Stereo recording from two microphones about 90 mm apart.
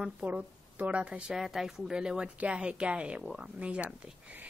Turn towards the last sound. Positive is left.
turn(degrees=-10)  # may be behind; listen again after turning